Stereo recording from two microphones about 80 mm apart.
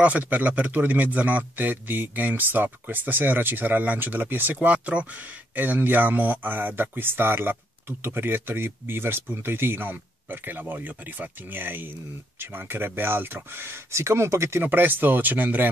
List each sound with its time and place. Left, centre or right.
0.0 s a man's voice: centre; by 14.6 s right
14.6 s a man's voice: right